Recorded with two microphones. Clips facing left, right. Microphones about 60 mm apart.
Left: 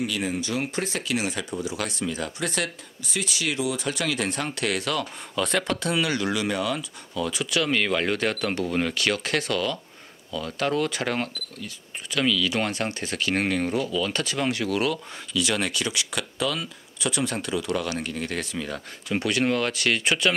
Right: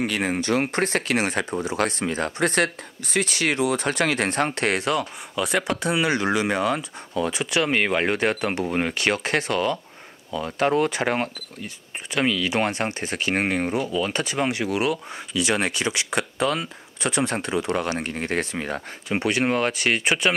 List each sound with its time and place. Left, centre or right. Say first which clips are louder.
0.0 s speech: right 3 dB; right
5.3 s speech: right 1 dB; centre